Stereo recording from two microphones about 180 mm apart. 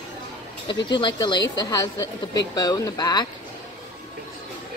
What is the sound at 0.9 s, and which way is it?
A woman's voice, 25° left (ahead or behind).